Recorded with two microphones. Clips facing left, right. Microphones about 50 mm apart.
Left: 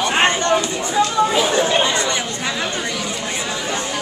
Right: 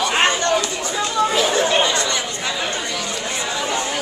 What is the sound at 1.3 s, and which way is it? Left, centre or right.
Speech, centre.